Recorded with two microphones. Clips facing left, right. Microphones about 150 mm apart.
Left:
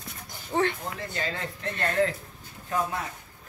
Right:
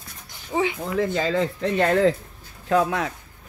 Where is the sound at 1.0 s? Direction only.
90° right.